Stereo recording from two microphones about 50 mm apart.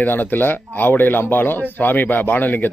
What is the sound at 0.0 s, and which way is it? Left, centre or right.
Speech, left.